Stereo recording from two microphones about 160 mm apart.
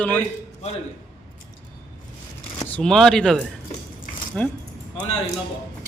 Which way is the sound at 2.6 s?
5° left (ahead or behind).